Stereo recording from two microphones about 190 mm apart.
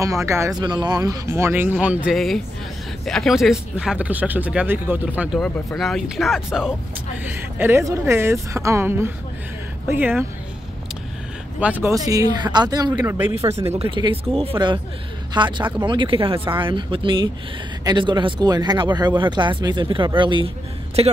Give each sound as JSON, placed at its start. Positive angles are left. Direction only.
{"t": 0.0, "sound": "speech", "side_deg": -15}
{"t": 11.6, "sound": "speech", "side_deg": -10}
{"t": 13.7, "sound": "speech", "side_deg": -25}